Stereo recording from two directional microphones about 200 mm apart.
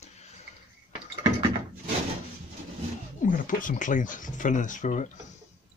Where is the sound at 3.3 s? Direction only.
40° left (ahead or behind).